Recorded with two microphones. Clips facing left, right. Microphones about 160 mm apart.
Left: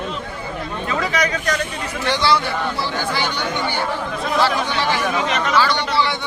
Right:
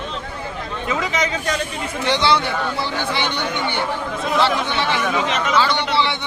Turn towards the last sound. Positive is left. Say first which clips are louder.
# even
turn(degrees=-20)  # may be behind; listen again after turning